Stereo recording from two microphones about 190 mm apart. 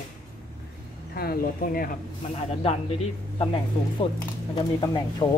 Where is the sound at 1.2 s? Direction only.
50° left (ahead or behind).